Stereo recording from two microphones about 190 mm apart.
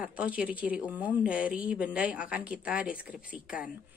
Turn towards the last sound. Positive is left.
turn(degrees=-5)  # may be behind; listen again after turning